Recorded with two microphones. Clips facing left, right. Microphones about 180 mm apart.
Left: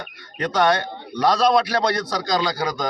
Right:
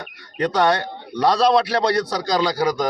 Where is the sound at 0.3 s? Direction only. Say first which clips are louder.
Right 1 dB; 30° right (ahead or behind).